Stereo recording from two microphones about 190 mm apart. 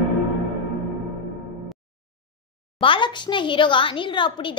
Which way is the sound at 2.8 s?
25° left (ahead or behind).